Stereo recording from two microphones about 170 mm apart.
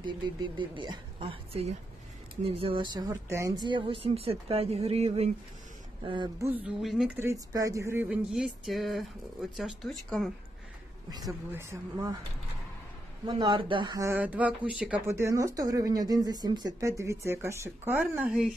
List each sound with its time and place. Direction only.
0.0 s speech: 25° right (ahead or behind)
6.0 s speech: 30° right (ahead or behind)
6.8 s speech: centre (ahead or behind)
7.2 s speech: 15° right (ahead or behind); by 10.3 s centre (ahead or behind)
11.1 s speech: 20° right (ahead or behind)
13.3 s speech: 25° right (ahead or behind)
14.1 s speech: 10° right (ahead or behind)